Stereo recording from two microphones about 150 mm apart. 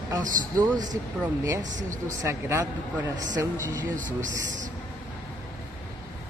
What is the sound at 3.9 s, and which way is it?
Speech, 60° right (ahead or behind).